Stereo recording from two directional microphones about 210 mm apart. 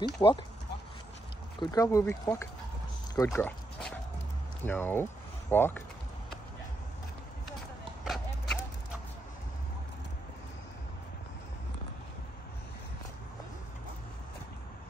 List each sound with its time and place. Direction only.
0.2 s speech: 20° left (ahead or behind)
1.6 s speech: 15° left (ahead or behind)
8.0 s a sound: centre (ahead or behind)